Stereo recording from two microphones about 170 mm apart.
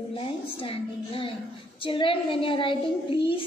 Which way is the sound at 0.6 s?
35° left (ahead or behind).